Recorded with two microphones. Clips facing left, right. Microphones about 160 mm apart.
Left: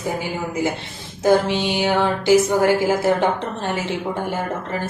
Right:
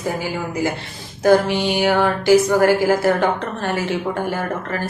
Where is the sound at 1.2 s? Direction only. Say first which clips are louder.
Right 2 dB; 20° left (ahead or behind).